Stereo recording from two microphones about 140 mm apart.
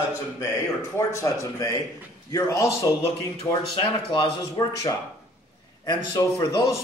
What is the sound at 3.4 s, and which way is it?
A man's voice, 25° left (ahead or behind).